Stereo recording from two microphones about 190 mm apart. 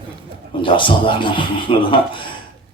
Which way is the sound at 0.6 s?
25° left (ahead or behind).